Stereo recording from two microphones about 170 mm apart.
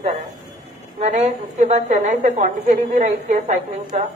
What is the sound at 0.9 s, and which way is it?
A woman's voice, 45° right (ahead or behind).